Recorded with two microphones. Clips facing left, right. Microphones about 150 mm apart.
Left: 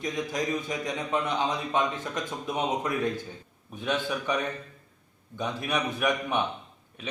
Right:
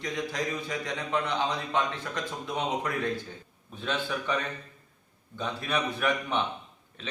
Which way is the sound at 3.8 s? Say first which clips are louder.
Left 2 dB; 15° left (ahead or behind).